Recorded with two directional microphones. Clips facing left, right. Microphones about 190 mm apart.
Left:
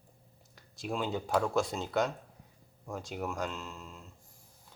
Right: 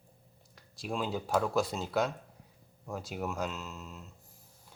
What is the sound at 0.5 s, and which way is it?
Speech, centre (ahead or behind).